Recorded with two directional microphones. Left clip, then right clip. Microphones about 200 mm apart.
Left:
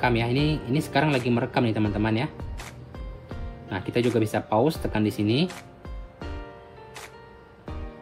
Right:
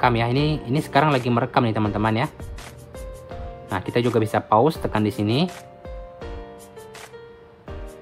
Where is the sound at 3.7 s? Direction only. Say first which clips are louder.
Right 3 dB; 15° right (ahead or behind).